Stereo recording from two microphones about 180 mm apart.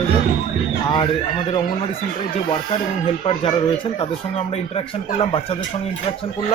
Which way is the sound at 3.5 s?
30° left (ahead or behind).